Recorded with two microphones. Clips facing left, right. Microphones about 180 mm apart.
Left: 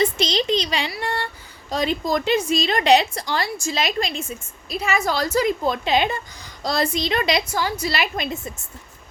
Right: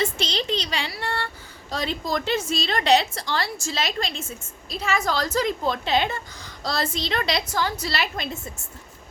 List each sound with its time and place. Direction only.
0.0 s a woman's voice: 15° left (ahead or behind)